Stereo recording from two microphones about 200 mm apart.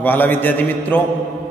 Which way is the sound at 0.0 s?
10° left (ahead or behind).